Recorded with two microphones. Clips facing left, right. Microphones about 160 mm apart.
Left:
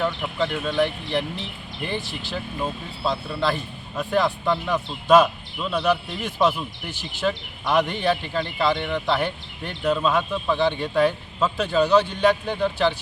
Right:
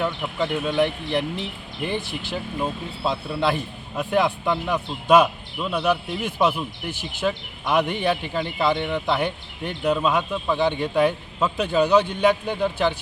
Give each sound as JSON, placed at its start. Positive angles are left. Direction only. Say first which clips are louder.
{"t": 0.0, "sound": "speech", "louder": "even", "side_deg": -10}
{"t": 2.0, "sound": "speech", "louder": "right 2 dB", "side_deg": -55}
{"t": 2.3, "sound": "speech", "louder": "right 1 dB", "side_deg": -15}